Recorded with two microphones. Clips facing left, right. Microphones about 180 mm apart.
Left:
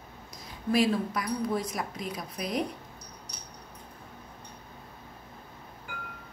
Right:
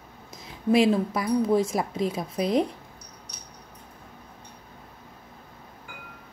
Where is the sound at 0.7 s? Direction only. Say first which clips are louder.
Right 5 dB; 25° right (ahead or behind).